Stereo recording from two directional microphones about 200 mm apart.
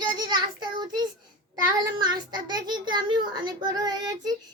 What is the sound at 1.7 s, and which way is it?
A child's voice, 20° right (ahead or behind).